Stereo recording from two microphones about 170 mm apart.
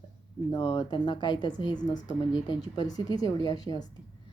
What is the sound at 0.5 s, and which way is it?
A woman's voice, 35° left (ahead or behind).